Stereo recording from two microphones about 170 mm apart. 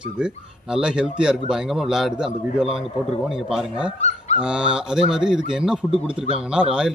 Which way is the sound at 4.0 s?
40° left (ahead or behind).